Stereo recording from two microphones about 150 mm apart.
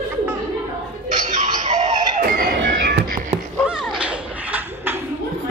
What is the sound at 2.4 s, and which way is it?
Music, 80° right.